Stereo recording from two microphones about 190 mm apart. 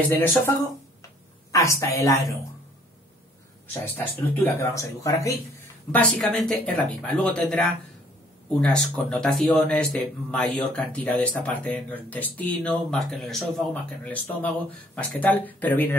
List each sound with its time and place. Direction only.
0.1 s speech: 15° left (ahead or behind)
3.8 s speech: 10° left (ahead or behind)